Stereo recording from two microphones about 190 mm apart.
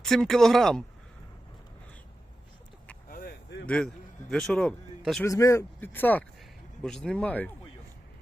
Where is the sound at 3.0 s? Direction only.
50° left (ahead or behind).